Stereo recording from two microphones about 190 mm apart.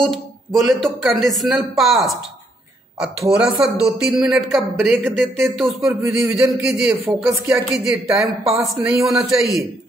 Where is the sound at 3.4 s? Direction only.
5° right (ahead or behind).